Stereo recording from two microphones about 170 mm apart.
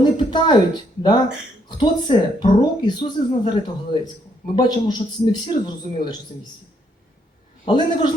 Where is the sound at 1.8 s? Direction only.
25° left (ahead or behind).